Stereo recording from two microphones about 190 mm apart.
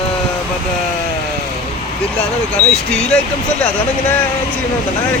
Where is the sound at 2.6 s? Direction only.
35° left (ahead or behind).